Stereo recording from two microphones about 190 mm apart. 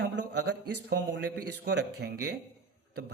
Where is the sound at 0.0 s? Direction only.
65° right (ahead or behind).